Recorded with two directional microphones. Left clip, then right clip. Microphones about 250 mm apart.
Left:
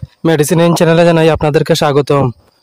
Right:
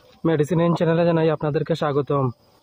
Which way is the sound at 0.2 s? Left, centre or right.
Left.